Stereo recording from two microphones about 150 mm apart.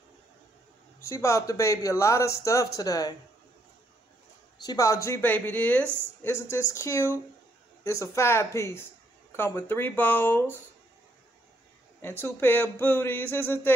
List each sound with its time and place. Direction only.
1.0 s speech: 20° left (ahead or behind)
4.6 s speech: 20° left (ahead or behind)
12.0 s speech: 15° left (ahead or behind)